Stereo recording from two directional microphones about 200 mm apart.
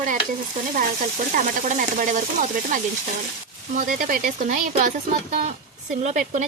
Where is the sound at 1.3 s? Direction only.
40° right (ahead or behind).